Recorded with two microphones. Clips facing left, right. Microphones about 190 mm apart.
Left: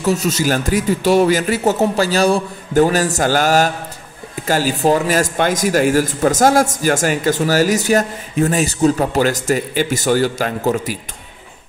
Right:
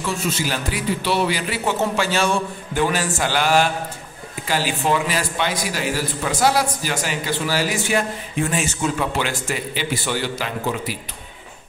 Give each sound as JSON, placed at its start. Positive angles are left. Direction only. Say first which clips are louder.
{"t": 0.0, "sound": "a man's voice", "louder": "left 7 dB", "side_deg": 40}